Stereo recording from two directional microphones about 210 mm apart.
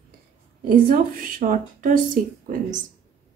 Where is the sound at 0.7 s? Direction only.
40° right (ahead or behind).